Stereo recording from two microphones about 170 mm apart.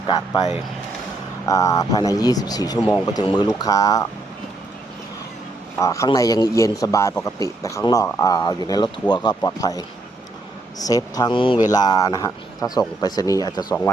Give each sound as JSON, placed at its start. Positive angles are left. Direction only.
{"t": 1.5, "sound": "speech", "side_deg": 20}
{"t": 5.7, "sound": "a man's voice", "side_deg": 20}